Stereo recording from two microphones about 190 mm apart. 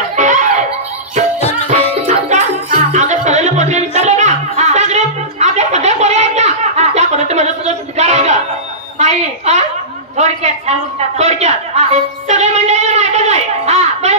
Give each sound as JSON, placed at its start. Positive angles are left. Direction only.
{"t": 0.1, "sound": "giggle", "side_deg": -40}
{"t": 2.0, "sound": "music", "side_deg": -40}
{"t": 8.9, "sound": "a woman's voice", "side_deg": -35}
{"t": 10.1, "sound": "a sound", "side_deg": -35}